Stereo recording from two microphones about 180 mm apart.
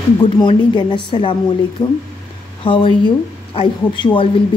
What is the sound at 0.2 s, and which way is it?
Speech, 25° left (ahead or behind).